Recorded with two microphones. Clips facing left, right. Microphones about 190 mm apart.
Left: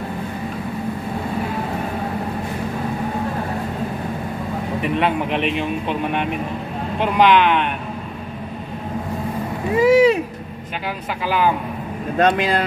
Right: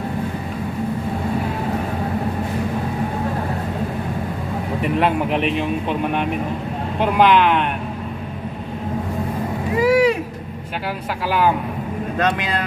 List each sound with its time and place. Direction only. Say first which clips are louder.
4.8 s speech: right 2 dB; centre (ahead or behind)
9.8 s speech: left 3 dB; 25° left (ahead or behind)
11.2 s speech: right 1 dB; 5° right (ahead or behind)
12.2 s speech: left 5 dB; 35° left (ahead or behind)